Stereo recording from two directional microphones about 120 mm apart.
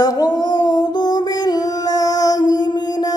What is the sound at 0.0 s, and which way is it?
Music, 35° left (ahead or behind).